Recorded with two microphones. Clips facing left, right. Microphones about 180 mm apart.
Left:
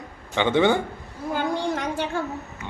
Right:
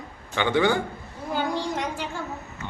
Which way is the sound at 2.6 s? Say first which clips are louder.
Even; 10° left (ahead or behind).